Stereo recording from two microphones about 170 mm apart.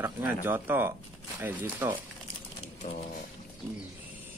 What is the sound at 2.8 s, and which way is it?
Speech, 40° left (ahead or behind).